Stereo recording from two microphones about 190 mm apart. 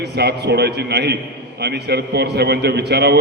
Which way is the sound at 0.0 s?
60° right (ahead or behind).